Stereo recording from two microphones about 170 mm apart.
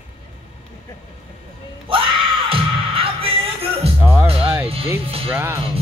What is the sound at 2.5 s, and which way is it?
Music, 30° right (ahead or behind).